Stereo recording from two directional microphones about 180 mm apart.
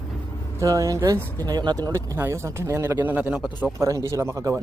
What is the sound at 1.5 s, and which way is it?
A man's voice, 20° right (ahead or behind).